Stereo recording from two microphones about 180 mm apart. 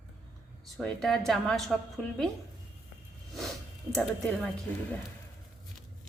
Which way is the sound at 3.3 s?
Centre (ahead or behind).